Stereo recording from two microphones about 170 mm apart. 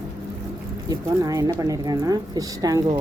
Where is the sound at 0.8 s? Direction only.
20° right (ahead or behind).